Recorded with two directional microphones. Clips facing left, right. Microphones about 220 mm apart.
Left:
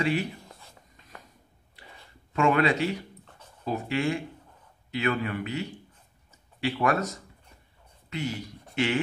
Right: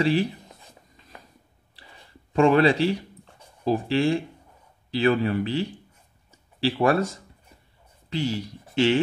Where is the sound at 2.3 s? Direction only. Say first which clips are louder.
Right 5 dB; 30° right (ahead or behind).